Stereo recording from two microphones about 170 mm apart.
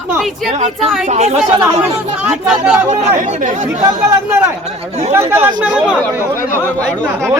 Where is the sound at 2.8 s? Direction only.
40° right (ahead or behind).